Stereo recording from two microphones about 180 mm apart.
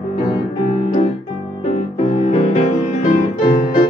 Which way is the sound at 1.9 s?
35° left (ahead or behind).